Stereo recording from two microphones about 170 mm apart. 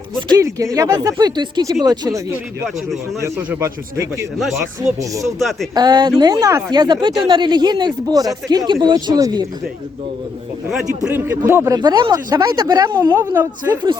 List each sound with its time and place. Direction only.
0.2 s speech: 20° right (ahead or behind)
4.9 s speech: 20° right (ahead or behind)
11.0 s speech: 10° right (ahead or behind)